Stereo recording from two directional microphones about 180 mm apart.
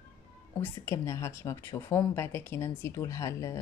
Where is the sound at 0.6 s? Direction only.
15° left (ahead or behind).